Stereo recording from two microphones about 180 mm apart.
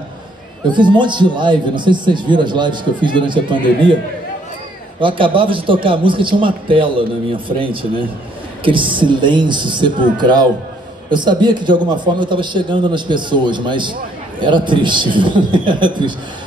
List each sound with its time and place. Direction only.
0.7 s speech: 25° right (ahead or behind)
5.0 s speech: 30° right (ahead or behind)